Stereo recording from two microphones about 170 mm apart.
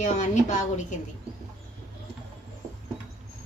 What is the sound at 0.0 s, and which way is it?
Speech, 45° left (ahead or behind).